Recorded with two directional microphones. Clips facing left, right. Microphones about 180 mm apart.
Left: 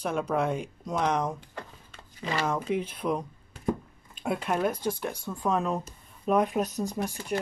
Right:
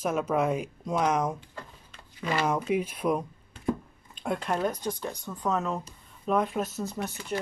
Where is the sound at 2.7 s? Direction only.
10° right (ahead or behind).